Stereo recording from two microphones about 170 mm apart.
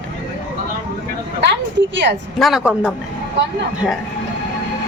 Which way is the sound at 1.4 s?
90° right.